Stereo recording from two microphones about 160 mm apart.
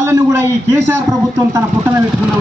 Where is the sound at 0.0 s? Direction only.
15° right (ahead or behind).